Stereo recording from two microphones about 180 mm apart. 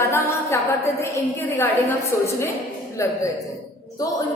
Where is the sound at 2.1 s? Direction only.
15° left (ahead or behind).